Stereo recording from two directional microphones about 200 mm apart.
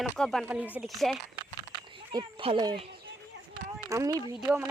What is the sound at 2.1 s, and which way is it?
Speech, 25° right (ahead or behind).